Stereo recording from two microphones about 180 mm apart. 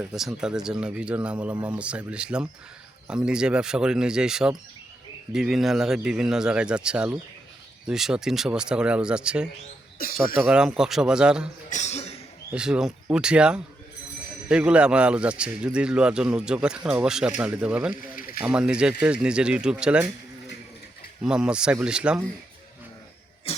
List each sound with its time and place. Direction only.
0.0 s a man's voice: centre (ahead or behind)
10.0 s speech: 55° left (ahead or behind)
10.4 s a man's voice: 5° right (ahead or behind)
11.7 s speech: 40° left (ahead or behind)
12.5 s a man's voice: 5° right (ahead or behind)
21.2 s a man's voice: 5° right (ahead or behind)
23.5 s cough: 35° left (ahead or behind)